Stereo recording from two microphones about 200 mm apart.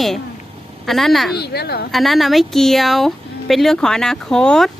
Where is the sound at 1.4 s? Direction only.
55° left (ahead or behind).